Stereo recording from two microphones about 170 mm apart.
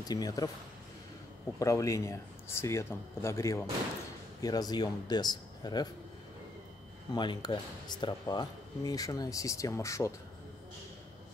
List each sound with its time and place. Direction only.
0.1 s speech: 20° left (ahead or behind)
1.6 s a man's voice: 20° left (ahead or behind)
7.2 s speech: 25° left (ahead or behind)